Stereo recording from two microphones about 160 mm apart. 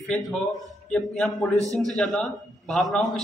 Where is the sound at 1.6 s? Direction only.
20° right (ahead or behind).